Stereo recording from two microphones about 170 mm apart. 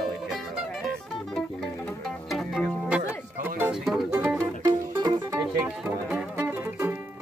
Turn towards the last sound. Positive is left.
turn(degrees=-10)  # may be behind; listen again after turning